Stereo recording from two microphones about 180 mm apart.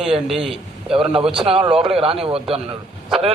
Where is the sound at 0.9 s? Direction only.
30° right (ahead or behind).